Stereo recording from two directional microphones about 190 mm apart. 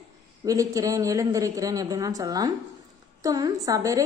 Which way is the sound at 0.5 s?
20° right (ahead or behind).